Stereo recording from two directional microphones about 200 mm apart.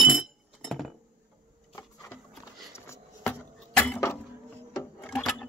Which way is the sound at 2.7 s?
15° left (ahead or behind).